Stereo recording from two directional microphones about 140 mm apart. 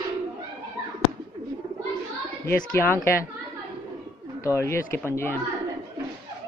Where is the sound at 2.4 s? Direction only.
15° left (ahead or behind).